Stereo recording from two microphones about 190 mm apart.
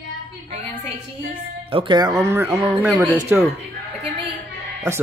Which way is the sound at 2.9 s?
Centre (ahead or behind).